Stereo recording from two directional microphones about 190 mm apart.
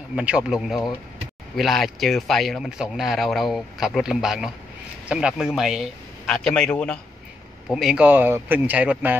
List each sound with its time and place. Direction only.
0.1 s speech: 5° right (ahead or behind)